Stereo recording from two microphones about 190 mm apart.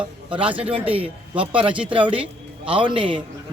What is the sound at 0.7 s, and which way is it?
A man's voice, 30° right (ahead or behind).